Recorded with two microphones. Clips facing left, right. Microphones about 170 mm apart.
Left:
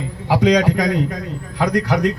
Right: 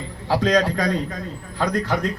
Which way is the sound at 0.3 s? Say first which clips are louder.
Left 4 dB; 15° left (ahead or behind).